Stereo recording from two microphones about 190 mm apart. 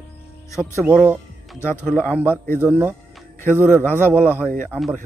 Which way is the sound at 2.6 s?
10° right (ahead or behind).